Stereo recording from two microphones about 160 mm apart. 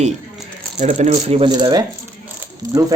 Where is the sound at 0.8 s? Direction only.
45° right (ahead or behind).